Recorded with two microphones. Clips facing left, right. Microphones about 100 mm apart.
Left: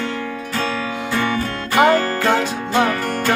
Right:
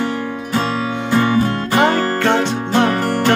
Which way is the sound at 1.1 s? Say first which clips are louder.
Right 6 dB; 25° right (ahead or behind).